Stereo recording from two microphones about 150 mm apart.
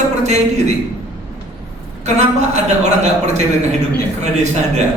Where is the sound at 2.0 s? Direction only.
50° right (ahead or behind).